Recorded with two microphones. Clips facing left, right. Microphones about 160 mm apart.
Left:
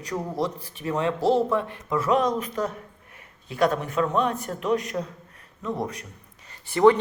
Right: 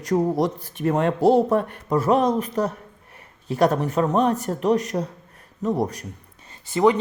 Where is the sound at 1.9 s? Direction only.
35° right (ahead or behind).